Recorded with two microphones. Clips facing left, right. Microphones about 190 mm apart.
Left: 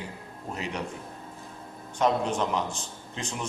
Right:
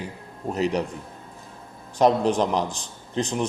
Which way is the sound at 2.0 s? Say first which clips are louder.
Right 6 dB; 35° right (ahead or behind).